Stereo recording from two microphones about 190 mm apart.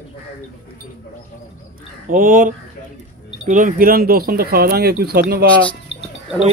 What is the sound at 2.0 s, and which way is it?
Speech, 45° right (ahead or behind).